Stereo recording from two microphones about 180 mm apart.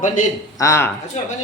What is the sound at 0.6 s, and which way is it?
Speech, 15° left (ahead or behind).